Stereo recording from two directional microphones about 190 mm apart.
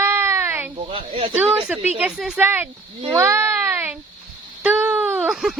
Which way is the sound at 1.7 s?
5° right (ahead or behind).